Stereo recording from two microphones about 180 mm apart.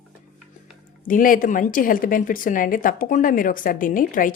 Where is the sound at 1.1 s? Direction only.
50° left (ahead or behind).